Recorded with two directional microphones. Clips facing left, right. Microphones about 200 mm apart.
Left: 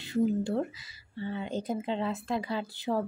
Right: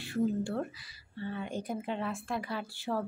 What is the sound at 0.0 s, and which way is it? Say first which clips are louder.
Speech: left 3 dB; 20° left (ahead or behind).